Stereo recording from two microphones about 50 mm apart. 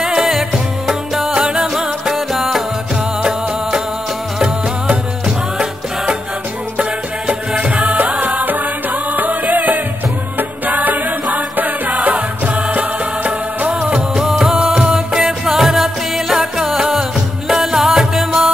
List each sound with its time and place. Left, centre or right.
0.0 s music: centre
1.3 s music: right
1.6 s music: centre
6.8 s music: right
15.1 s music: centre